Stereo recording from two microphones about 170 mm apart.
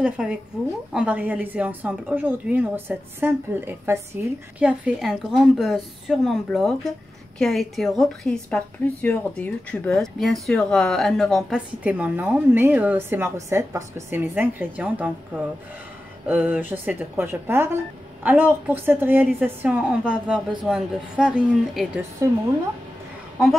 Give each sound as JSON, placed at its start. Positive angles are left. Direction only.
{"t": 0.0, "sound": "a woman's voice", "side_deg": -5}